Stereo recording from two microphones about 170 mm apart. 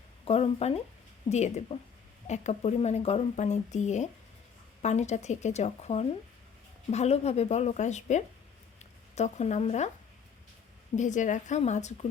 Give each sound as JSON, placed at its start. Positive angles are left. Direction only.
{"t": 0.3, "sound": "a woman's voice", "side_deg": 35}
{"t": 10.9, "sound": "a woman's voice", "side_deg": 45}